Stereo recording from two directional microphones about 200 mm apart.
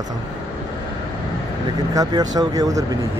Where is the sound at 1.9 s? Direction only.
20° right (ahead or behind).